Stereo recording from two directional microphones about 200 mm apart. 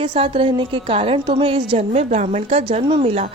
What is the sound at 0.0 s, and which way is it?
A woman's voice, 25° right (ahead or behind).